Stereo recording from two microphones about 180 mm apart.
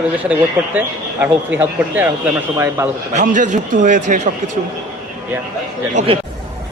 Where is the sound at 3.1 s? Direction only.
45° right (ahead or behind).